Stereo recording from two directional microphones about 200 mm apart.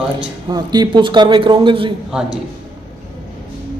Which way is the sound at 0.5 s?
20° right (ahead or behind).